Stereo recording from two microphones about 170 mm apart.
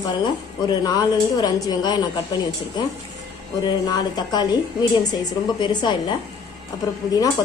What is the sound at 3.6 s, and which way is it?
A woman's voice, 25° left (ahead or behind).